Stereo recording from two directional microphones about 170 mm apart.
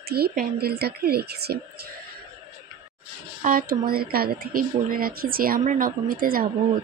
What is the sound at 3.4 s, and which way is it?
A woman's voice, 55° right (ahead or behind).